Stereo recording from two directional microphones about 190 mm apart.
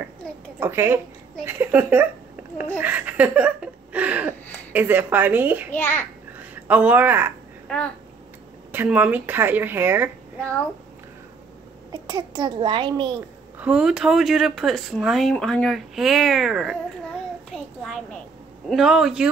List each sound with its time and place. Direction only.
0.6 s a woman's voice: 10° right (ahead or behind)
2.8 s a sound: 10° right (ahead or behind)
4.7 s a woman's voice: 10° right (ahead or behind)
5.7 s a child's voice: 10° left (ahead or behind)
6.3 s a woman's voice: 10° right (ahead or behind)
7.6 s babbling: 5° left (ahead or behind)
8.7 s a woman's voice: 5° right (ahead or behind)
11.9 s a child's voice: 20° right (ahead or behind)
13.6 s speech: 5° right (ahead or behind)
18.7 s speech: centre (ahead or behind)